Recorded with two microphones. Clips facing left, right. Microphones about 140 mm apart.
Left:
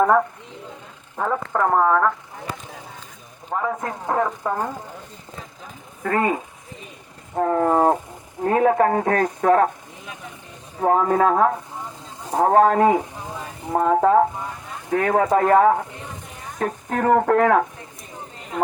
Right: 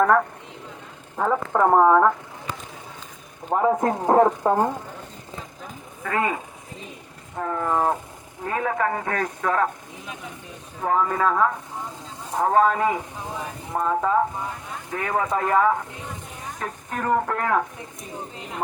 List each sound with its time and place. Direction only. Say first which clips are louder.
1.1 s speech: right 1 dB; 5° right (ahead or behind)
3.5 s speech: right 5 dB; 30° right (ahead or behind)
6.0 s speech: left 4 dB; 40° left (ahead or behind)
10.8 s speech: left 5 dB; 35° left (ahead or behind)
12.5 s speech: left 4 dB; 50° left (ahead or behind)
16.9 s speech: left 6 dB; 55° left (ahead or behind)